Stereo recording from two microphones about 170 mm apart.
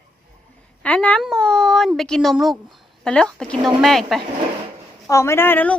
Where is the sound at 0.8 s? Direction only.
5° left (ahead or behind).